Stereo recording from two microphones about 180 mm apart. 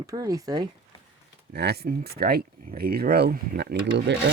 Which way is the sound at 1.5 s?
65° right (ahead or behind).